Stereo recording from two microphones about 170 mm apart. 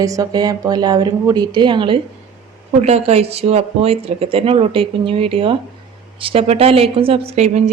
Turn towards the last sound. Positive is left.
turn(degrees=-40)  # may be behind; listen again after turning